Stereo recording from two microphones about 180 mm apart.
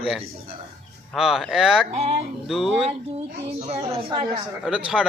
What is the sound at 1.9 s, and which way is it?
Speech, 35° right (ahead or behind).